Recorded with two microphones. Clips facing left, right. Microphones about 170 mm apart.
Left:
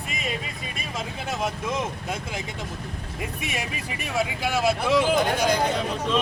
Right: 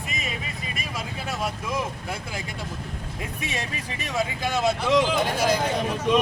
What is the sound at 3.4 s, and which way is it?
Speech, 10° left (ahead or behind).